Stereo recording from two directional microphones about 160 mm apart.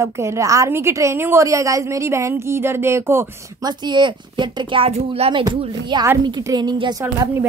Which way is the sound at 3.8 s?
30° right (ahead or behind).